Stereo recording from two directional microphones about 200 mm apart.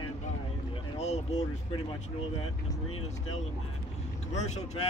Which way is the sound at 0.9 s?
35° left (ahead or behind).